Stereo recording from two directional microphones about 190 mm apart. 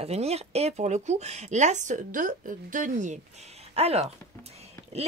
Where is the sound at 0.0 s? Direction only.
35° right (ahead or behind).